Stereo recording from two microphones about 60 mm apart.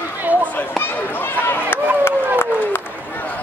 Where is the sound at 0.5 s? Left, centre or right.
Left.